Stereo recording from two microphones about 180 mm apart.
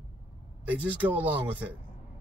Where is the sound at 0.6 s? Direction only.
10° right (ahead or behind).